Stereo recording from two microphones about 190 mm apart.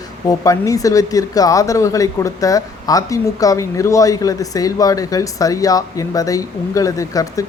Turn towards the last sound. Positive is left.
turn(degrees=20)  # may be behind; listen again after turning